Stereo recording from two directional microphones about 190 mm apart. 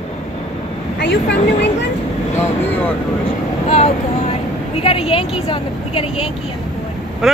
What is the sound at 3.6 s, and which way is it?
A woman's voice, 35° left (ahead or behind).